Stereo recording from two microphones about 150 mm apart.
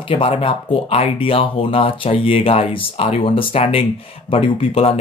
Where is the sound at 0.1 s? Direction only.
35° left (ahead or behind).